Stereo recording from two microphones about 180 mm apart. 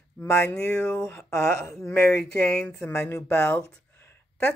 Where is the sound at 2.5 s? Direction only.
5° left (ahead or behind).